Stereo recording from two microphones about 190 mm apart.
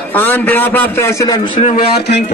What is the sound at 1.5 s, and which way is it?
Speech, 45° left (ahead or behind).